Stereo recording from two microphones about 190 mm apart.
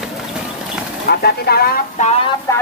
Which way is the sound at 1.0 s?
55° left (ahead or behind).